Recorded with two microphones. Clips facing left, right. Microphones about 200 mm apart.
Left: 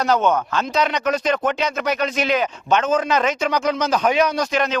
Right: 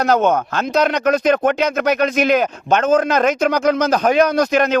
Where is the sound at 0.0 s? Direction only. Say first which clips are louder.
Right 3 dB; 45° right (ahead or behind).